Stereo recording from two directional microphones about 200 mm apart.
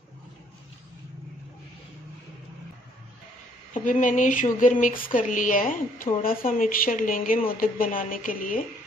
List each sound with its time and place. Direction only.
3.7 s a woman's voice: 40° left (ahead or behind)